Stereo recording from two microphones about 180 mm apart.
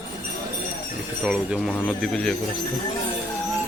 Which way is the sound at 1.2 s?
5° right (ahead or behind).